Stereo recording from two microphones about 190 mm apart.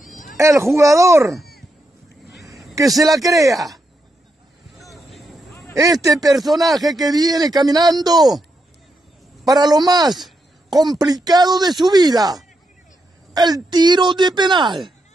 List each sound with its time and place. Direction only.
0.0 s a sound: 45° left (ahead or behind)
0.4 s speech: 15° right (ahead or behind)
2.9 s a man's voice: centre (ahead or behind)
3.3 s speech: 15° right (ahead or behind)
4.7 s a sound: centre (ahead or behind)
5.8 s speech: 20° right (ahead or behind)
6.5 s a man's voice: centre (ahead or behind)
7.0 s speech: 20° right (ahead or behind)
9.5 s speech: 20° right (ahead or behind)